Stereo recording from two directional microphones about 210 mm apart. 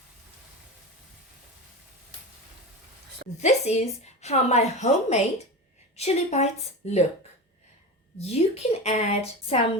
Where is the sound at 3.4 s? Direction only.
30° left (ahead or behind).